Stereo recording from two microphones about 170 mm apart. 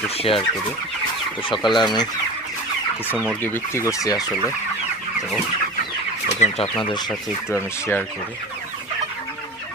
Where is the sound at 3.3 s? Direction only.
10° left (ahead or behind).